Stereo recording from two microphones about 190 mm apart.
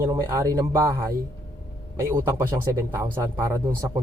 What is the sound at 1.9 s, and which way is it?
Speech, 15° right (ahead or behind).